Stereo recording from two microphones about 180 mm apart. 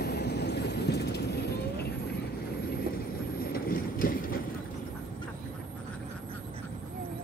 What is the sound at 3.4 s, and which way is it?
Vehicle, 55° left (ahead or behind).